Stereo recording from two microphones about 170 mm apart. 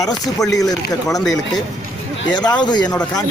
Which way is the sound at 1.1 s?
Centre (ahead or behind).